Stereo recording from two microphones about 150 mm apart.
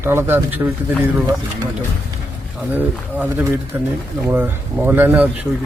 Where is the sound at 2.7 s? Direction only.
10° right (ahead or behind).